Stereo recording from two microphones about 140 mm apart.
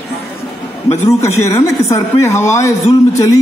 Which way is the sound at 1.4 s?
20° left (ahead or behind).